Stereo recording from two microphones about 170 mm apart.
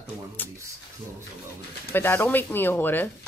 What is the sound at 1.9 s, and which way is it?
Speech, 10° left (ahead or behind).